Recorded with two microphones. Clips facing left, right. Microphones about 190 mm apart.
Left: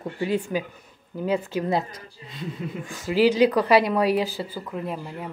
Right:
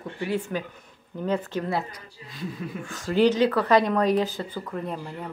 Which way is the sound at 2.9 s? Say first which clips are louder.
Left 1 dB; 5° left (ahead or behind).